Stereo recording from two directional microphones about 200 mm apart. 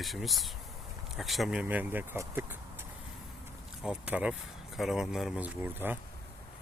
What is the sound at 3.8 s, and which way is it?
Speech, 5° right (ahead or behind).